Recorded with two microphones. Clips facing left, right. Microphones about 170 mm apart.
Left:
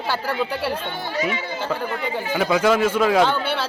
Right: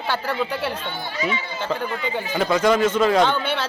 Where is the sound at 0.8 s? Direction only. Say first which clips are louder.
Left 2 dB; 55° left (ahead or behind).